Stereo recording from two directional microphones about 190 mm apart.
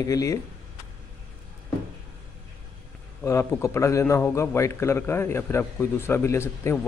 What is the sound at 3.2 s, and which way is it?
A man's voice, 15° left (ahead or behind).